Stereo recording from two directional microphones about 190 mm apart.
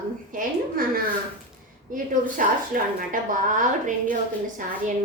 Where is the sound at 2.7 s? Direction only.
45° right (ahead or behind).